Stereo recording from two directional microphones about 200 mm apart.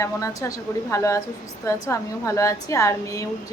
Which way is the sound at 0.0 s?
15° left (ahead or behind).